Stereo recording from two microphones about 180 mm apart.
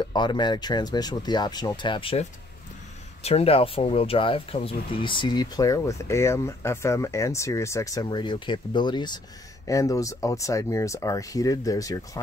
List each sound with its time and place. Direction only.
0.1 s speech: 25° left (ahead or behind)